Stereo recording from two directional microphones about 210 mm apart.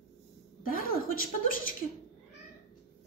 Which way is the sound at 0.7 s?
40° left (ahead or behind).